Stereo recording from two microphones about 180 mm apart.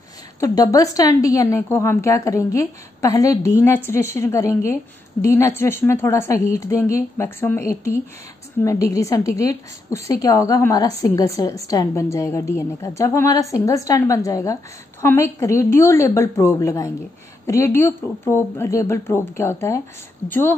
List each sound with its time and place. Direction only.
0.4 s a woman's voice: 20° left (ahead or behind)